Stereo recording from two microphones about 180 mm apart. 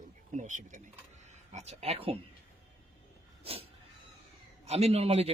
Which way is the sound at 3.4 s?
35° right (ahead or behind).